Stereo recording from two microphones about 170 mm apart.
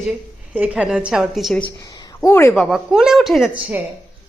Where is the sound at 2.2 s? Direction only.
15° left (ahead or behind).